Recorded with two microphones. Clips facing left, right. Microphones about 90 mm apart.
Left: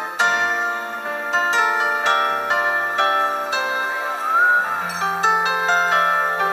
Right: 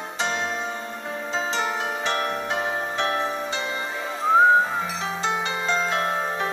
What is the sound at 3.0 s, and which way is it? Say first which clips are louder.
Music: left 6 dB; 55° left (ahead or behind).